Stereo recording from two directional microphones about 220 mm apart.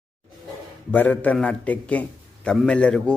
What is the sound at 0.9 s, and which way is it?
A man's voice, 10° left (ahead or behind).